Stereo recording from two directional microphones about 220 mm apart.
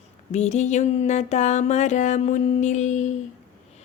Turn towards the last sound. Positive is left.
turn(degrees=35)  # may be behind; listen again after turning